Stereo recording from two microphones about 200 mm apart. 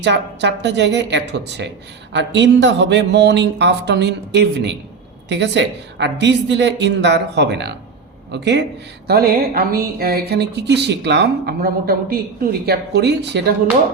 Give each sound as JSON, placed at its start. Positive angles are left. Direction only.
{"t": 0.0, "sound": "speech", "side_deg": -60}
{"t": 9.0, "sound": "speech", "side_deg": -45}